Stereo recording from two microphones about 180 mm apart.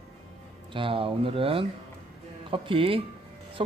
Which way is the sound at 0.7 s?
30° right (ahead or behind).